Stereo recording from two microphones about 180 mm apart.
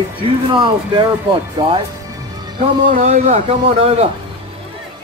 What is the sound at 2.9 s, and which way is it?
A man's voice, 40° right (ahead or behind).